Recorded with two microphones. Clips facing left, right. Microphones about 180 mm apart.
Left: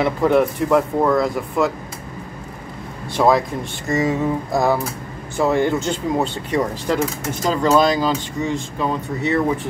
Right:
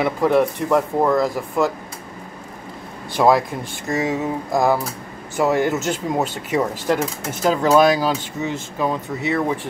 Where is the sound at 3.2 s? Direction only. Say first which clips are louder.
Even; 5° right (ahead or behind).